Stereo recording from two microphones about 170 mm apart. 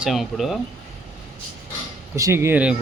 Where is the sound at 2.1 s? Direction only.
15° right (ahead or behind).